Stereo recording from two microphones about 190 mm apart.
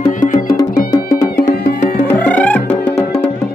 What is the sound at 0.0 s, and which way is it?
Music, 45° left (ahead or behind).